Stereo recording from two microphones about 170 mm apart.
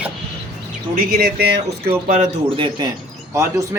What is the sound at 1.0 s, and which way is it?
Speech, 65° right (ahead or behind).